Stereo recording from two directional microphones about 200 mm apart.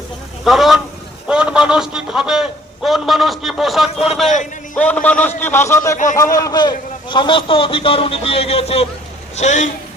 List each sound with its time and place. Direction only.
0.4 s a man's voice: centre (ahead or behind); by 9.6 s 35° left (ahead or behind)